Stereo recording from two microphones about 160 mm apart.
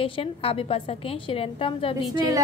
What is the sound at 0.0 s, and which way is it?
A woman's voice, 35° left (ahead or behind).